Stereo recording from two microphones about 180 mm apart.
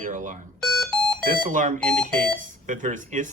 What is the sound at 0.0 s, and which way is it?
Speech, 45° right (ahead or behind).